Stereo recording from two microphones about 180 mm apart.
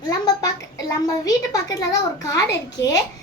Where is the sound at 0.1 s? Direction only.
20° left (ahead or behind).